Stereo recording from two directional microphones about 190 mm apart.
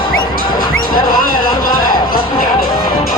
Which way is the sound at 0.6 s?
50° left (ahead or behind).